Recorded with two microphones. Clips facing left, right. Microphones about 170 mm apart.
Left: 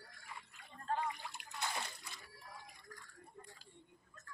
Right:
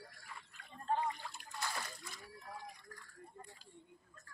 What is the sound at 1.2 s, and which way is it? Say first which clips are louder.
Water: even; 15° left (ahead or behind).